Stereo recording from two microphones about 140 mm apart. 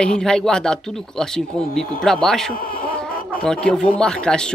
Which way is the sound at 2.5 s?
90° left.